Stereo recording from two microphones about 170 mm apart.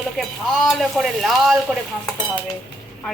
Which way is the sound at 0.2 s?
Centre (ahead or behind).